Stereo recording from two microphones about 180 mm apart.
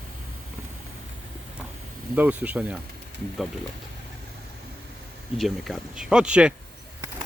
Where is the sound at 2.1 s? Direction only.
10° right (ahead or behind).